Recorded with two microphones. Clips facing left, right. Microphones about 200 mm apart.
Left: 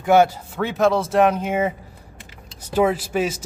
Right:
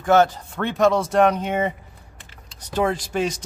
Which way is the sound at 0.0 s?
10° left (ahead or behind).